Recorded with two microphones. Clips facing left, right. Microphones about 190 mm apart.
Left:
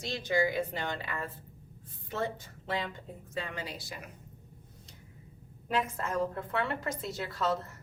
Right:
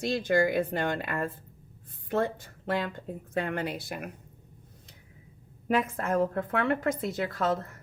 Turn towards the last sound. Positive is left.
turn(degrees=-55)  # may be behind; listen again after turning